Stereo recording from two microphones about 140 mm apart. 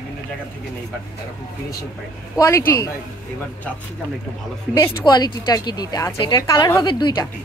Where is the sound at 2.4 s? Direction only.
20° left (ahead or behind).